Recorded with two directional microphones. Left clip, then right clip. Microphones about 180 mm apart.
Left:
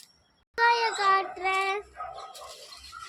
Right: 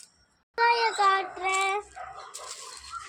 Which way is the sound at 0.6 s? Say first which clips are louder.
Right 1 dB; 10° right (ahead or behind).